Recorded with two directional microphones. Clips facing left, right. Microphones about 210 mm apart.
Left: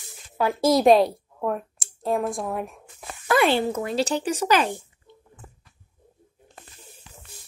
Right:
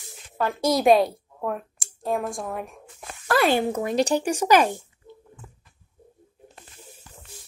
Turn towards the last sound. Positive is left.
turn(degrees=45)  # may be behind; listen again after turning